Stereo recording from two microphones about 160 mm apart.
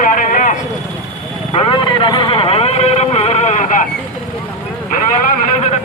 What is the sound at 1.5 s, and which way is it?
Vehicle, 30° left (ahead or behind).